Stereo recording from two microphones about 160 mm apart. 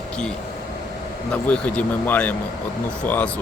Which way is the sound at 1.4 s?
5° left (ahead or behind).